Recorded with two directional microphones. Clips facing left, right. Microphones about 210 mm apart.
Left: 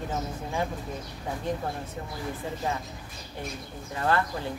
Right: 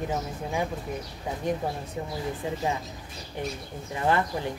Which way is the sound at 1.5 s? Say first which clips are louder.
Right 3 dB; 15° right (ahead or behind).